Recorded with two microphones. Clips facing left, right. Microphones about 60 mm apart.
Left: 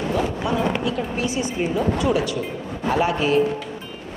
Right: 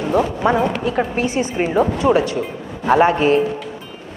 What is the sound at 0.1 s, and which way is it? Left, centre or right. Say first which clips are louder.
Speech: right 9 dB; right.